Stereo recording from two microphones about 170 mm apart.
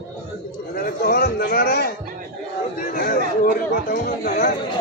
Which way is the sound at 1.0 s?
60° left (ahead or behind).